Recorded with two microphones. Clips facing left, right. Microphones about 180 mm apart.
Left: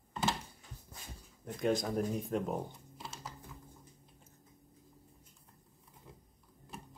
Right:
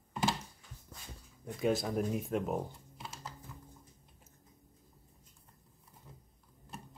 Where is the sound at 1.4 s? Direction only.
5° right (ahead or behind).